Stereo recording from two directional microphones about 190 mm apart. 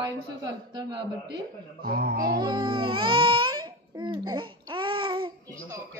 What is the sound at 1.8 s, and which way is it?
Speech, 50° right (ahead or behind).